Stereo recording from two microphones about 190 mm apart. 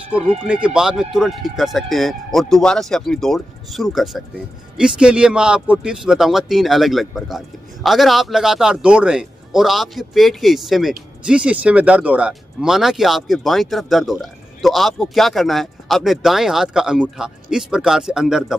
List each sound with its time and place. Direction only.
0.1 s speech: 5° right (ahead or behind)